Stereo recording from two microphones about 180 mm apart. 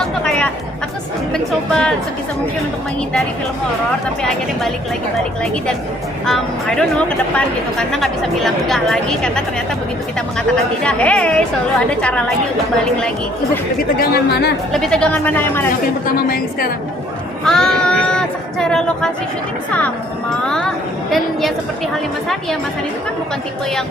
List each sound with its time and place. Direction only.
0.0 s chatter: 5° left (ahead or behind)
1.3 s speech: 5° left (ahead or behind)
4.2 s speech: 5° left (ahead or behind)
6.2 s speech: centre (ahead or behind)
14.0 s a woman's voice: 60° left (ahead or behind)
14.7 s speech: 5° left (ahead or behind)
16.1 s a woman's voice: 55° left (ahead or behind)
17.4 s speech: 5° left (ahead or behind)
20.3 s speech: 5° left (ahead or behind)